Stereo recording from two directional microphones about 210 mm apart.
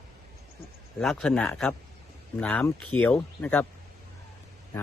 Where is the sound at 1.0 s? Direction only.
5° left (ahead or behind).